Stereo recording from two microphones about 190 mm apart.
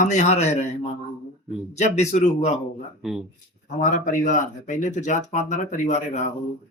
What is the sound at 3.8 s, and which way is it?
Speech, 40° left (ahead or behind).